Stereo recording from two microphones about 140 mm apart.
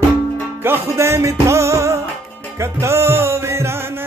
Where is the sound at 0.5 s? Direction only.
15° right (ahead or behind).